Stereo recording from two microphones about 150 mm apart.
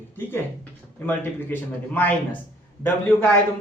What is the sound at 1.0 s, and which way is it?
Speech, 10° left (ahead or behind).